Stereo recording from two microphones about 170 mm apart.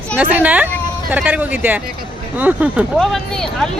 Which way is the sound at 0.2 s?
10° right (ahead or behind).